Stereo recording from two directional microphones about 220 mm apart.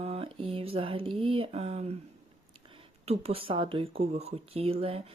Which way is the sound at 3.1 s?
25° right (ahead or behind).